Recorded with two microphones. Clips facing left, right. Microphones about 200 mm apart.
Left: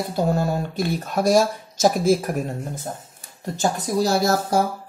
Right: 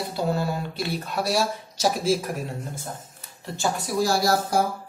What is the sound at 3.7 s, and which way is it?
Speech, 20° left (ahead or behind).